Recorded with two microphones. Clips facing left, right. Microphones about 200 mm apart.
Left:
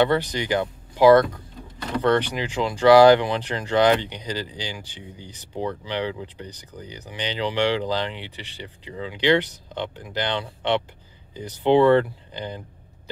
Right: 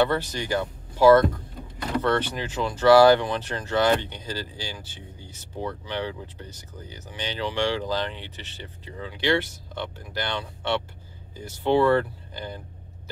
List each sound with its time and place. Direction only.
0.0 s speech: 15° left (ahead or behind)